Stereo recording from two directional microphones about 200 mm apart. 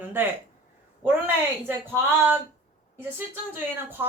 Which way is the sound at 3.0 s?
10° right (ahead or behind).